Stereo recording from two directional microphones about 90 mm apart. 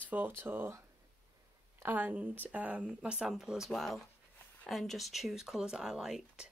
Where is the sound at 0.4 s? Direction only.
25° right (ahead or behind).